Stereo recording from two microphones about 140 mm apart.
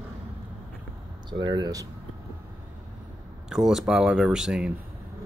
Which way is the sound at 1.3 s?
30° right (ahead or behind).